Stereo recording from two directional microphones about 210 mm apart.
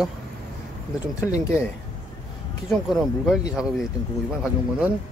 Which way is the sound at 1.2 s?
15° left (ahead or behind).